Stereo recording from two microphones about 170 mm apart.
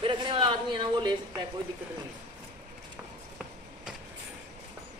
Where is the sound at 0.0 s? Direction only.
30° right (ahead or behind).